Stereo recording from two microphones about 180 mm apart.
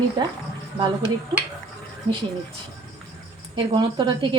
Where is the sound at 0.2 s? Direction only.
25° right (ahead or behind).